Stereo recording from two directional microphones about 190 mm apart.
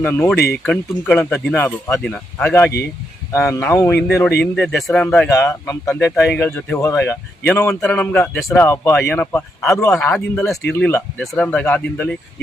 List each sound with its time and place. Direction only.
0.0 s speech: 10° left (ahead or behind)
0.3 s speech: 60° left (ahead or behind)
0.6 s speech: 5° left (ahead or behind)
6.1 s speech: centre (ahead or behind)
8.6 s speech: 10° left (ahead or behind)